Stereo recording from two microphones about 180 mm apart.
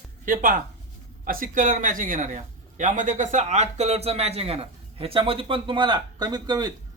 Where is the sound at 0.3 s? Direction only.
50° right (ahead or behind).